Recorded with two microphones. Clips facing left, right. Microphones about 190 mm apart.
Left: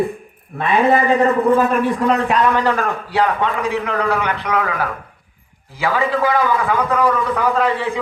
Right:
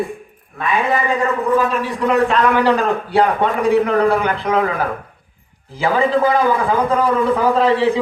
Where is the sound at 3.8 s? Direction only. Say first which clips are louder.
Right 4 dB; 30° right (ahead or behind).